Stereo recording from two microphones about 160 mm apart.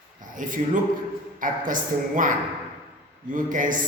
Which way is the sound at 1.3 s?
55° right (ahead or behind).